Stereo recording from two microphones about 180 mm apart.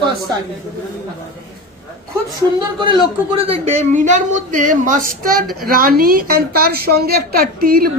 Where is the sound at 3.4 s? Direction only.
35° right (ahead or behind); by 7.9 s 55° right (ahead or behind).